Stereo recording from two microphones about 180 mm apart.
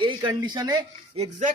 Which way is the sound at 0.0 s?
25° right (ahead or behind).